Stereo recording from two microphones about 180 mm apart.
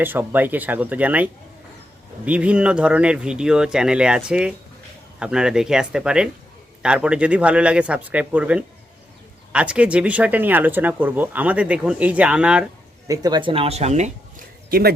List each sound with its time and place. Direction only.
0.0 s speech: 10° right (ahead or behind)
13.1 s speech: 20° right (ahead or behind); by 14.4 s 40° right (ahead or behind)
14.7 s speech: 60° right (ahead or behind)